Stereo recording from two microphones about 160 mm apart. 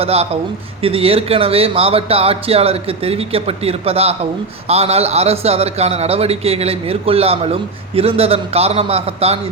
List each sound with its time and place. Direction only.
0.0 s a man's voice: 40° right (ahead or behind)